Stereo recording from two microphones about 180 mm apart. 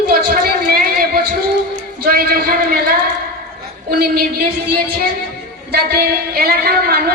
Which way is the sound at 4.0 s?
60° right (ahead or behind).